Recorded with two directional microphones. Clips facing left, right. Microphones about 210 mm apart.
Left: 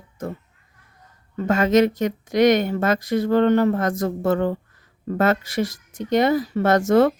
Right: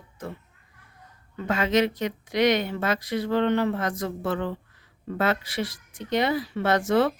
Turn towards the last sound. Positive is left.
turn(degrees=45)  # may be behind; listen again after turning